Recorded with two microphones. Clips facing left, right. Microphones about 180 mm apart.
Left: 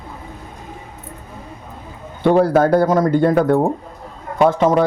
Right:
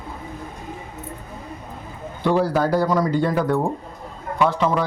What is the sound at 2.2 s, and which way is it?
Speech, 55° left (ahead or behind).